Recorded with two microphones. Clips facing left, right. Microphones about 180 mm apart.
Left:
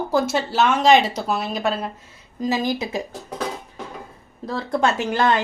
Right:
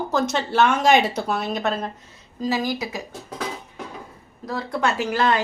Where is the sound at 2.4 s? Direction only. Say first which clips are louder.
Left 2 dB; 20° left (ahead or behind).